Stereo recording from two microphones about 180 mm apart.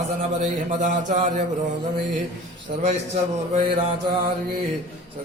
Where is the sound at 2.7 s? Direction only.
50° right (ahead or behind).